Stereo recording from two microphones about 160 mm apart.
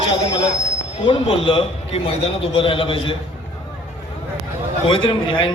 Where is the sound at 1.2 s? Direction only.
35° left (ahead or behind).